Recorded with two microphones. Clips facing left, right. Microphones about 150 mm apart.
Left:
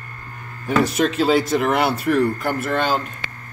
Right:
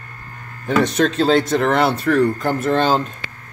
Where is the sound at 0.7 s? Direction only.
5° left (ahead or behind).